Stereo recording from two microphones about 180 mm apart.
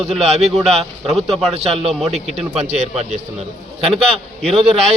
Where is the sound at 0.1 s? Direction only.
35° right (ahead or behind).